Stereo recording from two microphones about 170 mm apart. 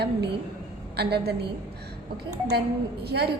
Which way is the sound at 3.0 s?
70° right (ahead or behind).